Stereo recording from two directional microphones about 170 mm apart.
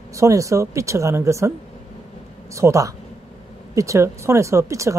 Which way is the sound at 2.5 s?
20° right (ahead or behind).